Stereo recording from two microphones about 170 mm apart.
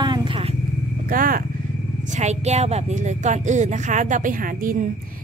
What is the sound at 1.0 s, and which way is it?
Speech, 55° right (ahead or behind).